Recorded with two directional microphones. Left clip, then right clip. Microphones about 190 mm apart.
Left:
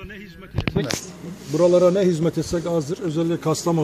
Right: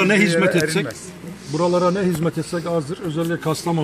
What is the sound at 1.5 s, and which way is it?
Speech, 35° left (ahead or behind).